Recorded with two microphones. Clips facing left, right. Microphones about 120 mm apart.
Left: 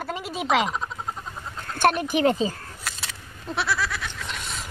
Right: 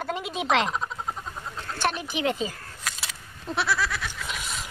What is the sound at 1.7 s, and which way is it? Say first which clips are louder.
Speech: left 7 dB; 50° left (ahead or behind).